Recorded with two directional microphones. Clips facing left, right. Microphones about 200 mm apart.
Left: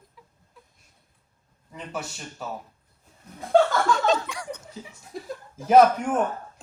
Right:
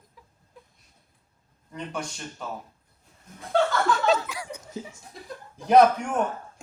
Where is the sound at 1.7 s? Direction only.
5° left (ahead or behind).